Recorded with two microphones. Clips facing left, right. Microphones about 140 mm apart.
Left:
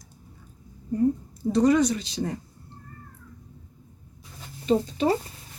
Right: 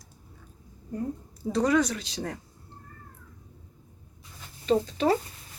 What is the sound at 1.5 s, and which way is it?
Speech, 10° left (ahead or behind).